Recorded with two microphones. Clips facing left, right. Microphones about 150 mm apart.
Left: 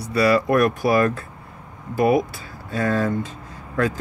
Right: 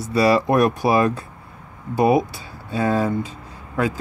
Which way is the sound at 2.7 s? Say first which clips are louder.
Right 1 dB; 15° right (ahead or behind).